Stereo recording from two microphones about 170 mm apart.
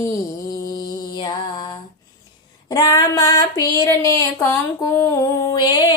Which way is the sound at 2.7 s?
20° left (ahead or behind).